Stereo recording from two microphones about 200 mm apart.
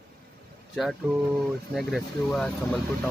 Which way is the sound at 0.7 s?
Centre (ahead or behind).